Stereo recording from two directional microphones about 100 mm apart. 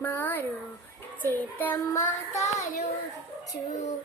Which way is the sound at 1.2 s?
20° left (ahead or behind).